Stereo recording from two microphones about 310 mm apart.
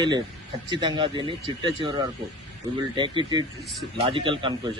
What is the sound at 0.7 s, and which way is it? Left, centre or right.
A man's voice, centre.